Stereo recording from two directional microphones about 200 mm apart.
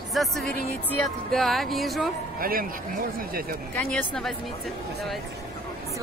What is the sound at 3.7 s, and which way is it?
Speech, 5° left (ahead or behind).